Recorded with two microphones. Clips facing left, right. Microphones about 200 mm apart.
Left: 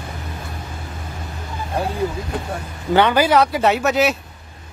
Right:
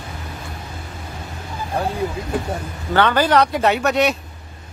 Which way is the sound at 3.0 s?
10° left (ahead or behind).